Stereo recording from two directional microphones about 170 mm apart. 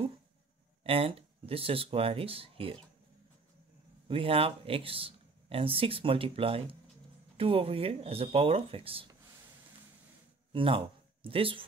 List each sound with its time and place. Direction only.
0.8 s speech: 35° right (ahead or behind)
4.1 s speech: 35° right (ahead or behind)
10.5 s speech: 30° right (ahead or behind)